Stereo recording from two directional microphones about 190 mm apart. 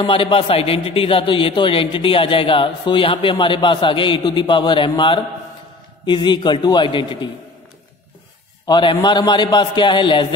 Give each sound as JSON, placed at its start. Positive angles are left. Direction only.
{"t": 0.0, "sound": "a man's voice", "side_deg": 25}
{"t": 8.6, "sound": "a man's voice", "side_deg": 25}